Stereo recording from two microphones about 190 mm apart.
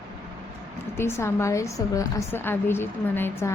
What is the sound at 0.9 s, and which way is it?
A woman's voice, 15° left (ahead or behind).